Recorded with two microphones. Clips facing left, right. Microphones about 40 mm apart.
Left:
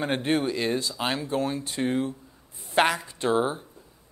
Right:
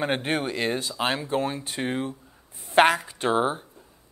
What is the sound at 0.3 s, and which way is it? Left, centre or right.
Speech, right.